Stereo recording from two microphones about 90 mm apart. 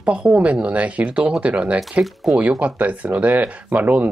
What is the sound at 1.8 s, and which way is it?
Speech, centre (ahead or behind).